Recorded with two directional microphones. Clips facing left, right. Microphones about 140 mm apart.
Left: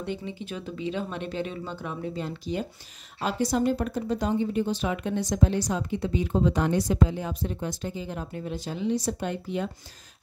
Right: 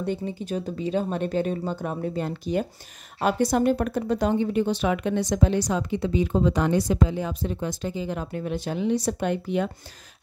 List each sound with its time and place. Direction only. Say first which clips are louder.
0.0 s speech: right 5 dB; 40° right (ahead or behind); by 9.7 s 65° right (ahead or behind)